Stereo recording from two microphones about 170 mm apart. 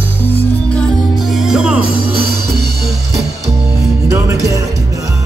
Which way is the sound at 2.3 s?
65° right (ahead or behind).